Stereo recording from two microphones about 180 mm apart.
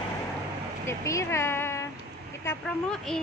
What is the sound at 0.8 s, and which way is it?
A woman's voice, 15° left (ahead or behind).